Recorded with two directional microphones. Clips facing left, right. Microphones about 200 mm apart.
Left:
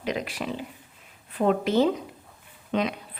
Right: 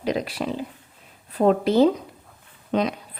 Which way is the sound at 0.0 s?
35° right (ahead or behind).